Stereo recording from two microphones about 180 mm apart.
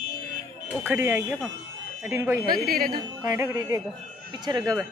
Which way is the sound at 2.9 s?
20° right (ahead or behind).